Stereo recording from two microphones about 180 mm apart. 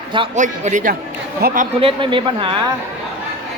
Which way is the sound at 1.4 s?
60° right (ahead or behind).